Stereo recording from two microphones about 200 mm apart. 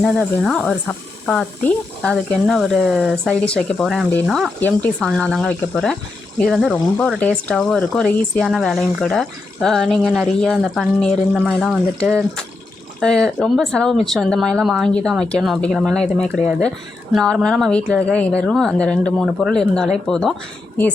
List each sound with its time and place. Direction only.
0.0 s speech: centre (ahead or behind)